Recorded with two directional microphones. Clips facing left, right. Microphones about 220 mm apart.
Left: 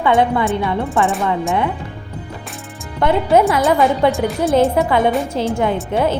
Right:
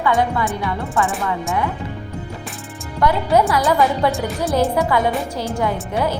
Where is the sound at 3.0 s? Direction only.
25° left (ahead or behind).